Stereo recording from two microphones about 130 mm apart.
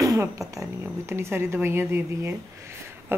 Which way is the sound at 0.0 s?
25° right (ahead or behind).